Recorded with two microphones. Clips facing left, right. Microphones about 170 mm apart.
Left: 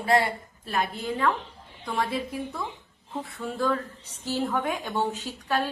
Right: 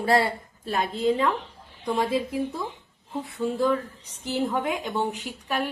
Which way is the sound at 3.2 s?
20° right (ahead or behind).